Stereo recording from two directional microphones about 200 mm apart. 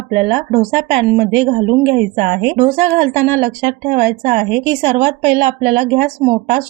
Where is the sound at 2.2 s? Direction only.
35° right (ahead or behind).